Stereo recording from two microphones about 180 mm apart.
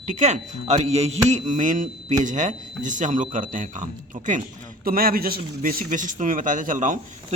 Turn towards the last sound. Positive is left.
turn(degrees=-45)  # may be behind; listen again after turning